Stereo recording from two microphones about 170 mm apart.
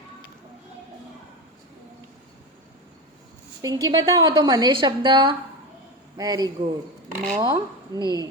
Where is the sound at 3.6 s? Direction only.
20° right (ahead or behind).